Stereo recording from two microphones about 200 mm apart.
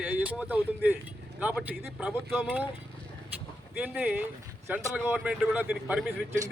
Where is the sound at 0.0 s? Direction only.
5° right (ahead or behind).